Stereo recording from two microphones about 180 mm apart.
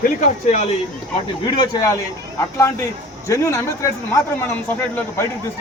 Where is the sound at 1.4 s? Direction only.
20° left (ahead or behind).